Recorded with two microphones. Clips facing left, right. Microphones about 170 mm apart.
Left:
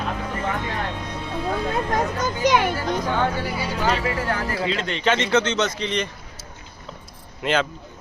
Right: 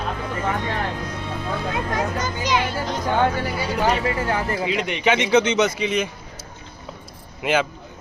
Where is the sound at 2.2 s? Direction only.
55° left (ahead or behind).